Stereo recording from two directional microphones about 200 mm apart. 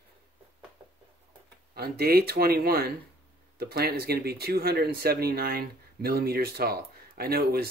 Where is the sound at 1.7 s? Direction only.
50° right (ahead or behind).